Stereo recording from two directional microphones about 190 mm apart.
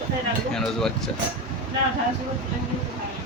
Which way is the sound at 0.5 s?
Centre (ahead or behind).